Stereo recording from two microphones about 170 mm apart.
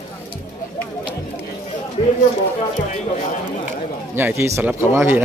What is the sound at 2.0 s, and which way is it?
Speech, 40° left (ahead or behind).